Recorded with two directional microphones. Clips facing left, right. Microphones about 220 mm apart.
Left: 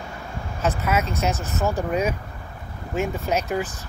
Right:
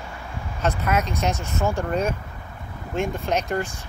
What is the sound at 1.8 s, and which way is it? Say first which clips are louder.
Speech: left 1 dB; 10° left (ahead or behind).